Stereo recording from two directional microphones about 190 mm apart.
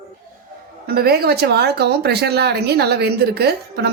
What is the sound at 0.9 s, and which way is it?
Speech, 55° right (ahead or behind).